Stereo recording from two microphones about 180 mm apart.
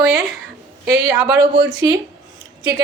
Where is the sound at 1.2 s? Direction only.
20° right (ahead or behind).